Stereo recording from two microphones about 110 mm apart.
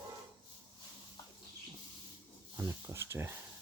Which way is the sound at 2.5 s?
25° right (ahead or behind).